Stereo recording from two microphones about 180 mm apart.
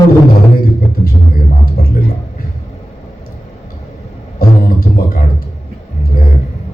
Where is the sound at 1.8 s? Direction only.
55° left (ahead or behind).